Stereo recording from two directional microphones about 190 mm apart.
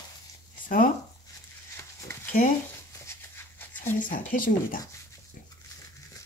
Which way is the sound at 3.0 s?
15° left (ahead or behind).